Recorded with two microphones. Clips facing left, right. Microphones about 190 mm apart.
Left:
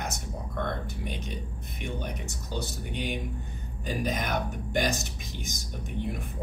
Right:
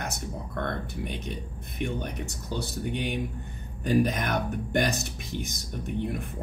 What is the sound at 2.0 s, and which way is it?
Speech, 60° right (ahead or behind).